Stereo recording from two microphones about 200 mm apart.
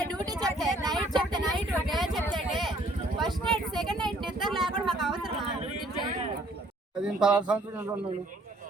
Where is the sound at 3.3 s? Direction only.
Centre (ahead or behind).